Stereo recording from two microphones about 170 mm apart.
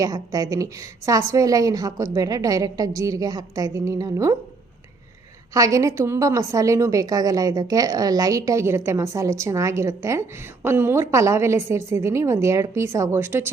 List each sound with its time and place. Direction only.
0.0 s a woman's voice: 20° right (ahead or behind)
5.5 s a woman's voice: 20° right (ahead or behind)